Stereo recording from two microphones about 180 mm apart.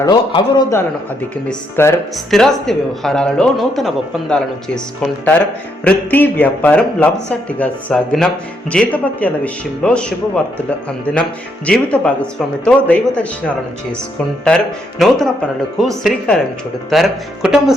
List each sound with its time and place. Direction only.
0.0 s a man's voice: 20° left (ahead or behind)
2.1 s speech: centre (ahead or behind)
5.8 s speech: 10° left (ahead or behind)
14.4 s speech: centre (ahead or behind)